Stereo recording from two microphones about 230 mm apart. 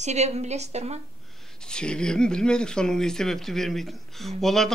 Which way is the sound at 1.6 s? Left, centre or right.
Centre.